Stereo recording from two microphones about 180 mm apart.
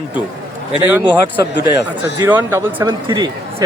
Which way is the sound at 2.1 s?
15° right (ahead or behind).